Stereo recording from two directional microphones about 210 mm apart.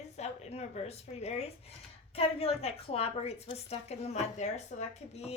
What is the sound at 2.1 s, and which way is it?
A woman's voice, 30° left (ahead or behind).